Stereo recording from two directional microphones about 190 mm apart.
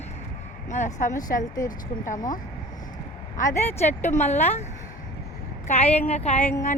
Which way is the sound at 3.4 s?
15° left (ahead or behind).